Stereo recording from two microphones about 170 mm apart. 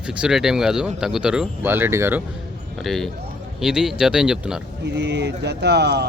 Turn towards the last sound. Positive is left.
turn(degrees=-75)  # may be behind; listen again after turning